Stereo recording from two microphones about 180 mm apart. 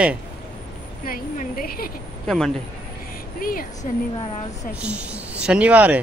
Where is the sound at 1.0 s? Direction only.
50° left (ahead or behind).